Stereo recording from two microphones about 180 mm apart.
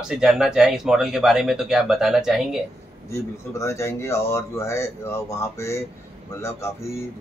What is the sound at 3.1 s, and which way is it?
Speech, 15° left (ahead or behind).